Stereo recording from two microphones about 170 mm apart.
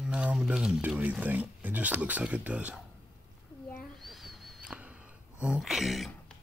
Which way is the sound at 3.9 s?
Centre (ahead or behind).